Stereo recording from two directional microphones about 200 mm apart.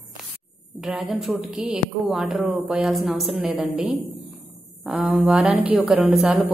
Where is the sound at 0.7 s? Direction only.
Centre (ahead or behind).